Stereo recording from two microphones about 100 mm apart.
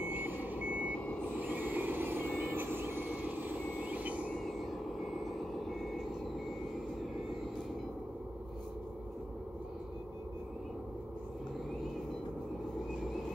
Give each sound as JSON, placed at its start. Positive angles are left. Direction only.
{"t": 0.0, "sound": "reversing beeps", "side_deg": -20}
{"t": 1.4, "sound": "vehicle", "side_deg": -15}